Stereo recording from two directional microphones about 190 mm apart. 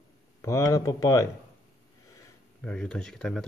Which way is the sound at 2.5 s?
5° left (ahead or behind).